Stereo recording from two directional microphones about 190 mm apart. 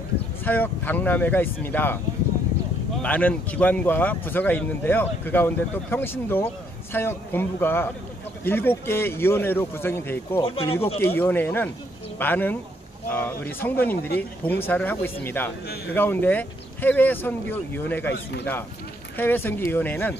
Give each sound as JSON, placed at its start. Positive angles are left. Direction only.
{"t": 0.5, "sound": "speech", "side_deg": 10}
{"t": 3.0, "sound": "speech", "side_deg": 10}
{"t": 10.7, "sound": "speech", "side_deg": 30}
{"t": 11.0, "sound": "speech", "side_deg": 10}
{"t": 19.1, "sound": "speech", "side_deg": 10}